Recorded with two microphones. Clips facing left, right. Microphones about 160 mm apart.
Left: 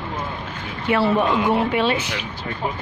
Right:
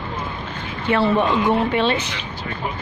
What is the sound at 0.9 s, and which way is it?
Speech, 10° left (ahead or behind).